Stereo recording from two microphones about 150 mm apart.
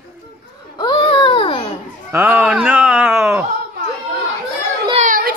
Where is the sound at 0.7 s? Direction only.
30° left (ahead or behind).